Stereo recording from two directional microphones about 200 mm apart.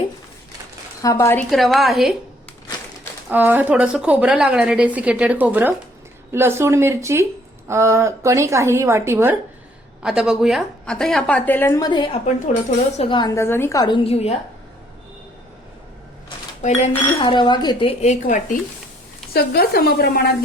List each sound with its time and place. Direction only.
1.0 s speech: 15° left (ahead or behind)
1.5 s a woman's voice: centre (ahead or behind)
3.2 s a woman's voice: 10° right (ahead or behind); by 14.3 s 30° left (ahead or behind)
16.6 s a woman's voice: 35° left (ahead or behind)
19.3 s speech: 50° left (ahead or behind)